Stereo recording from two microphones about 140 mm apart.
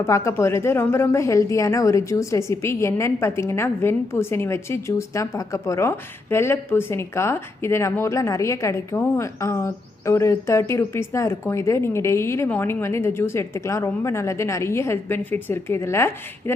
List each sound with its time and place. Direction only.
0.0 s speech: 20° left (ahead or behind)